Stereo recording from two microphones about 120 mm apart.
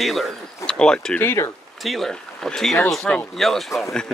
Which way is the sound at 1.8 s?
Centre (ahead or behind).